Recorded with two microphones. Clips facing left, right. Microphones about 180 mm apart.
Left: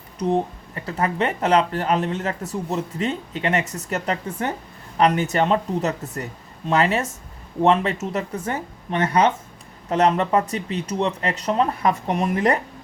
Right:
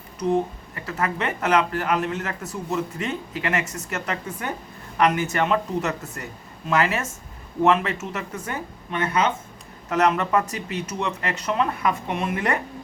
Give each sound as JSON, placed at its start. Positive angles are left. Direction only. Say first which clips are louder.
{"t": 0.2, "sound": "speech", "louder": "left 1 dB", "side_deg": 35}